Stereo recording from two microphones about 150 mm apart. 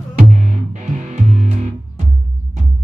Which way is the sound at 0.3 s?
55° right (ahead or behind).